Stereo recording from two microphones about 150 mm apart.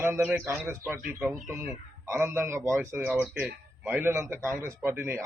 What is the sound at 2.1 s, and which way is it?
A man's voice, 15° right (ahead or behind).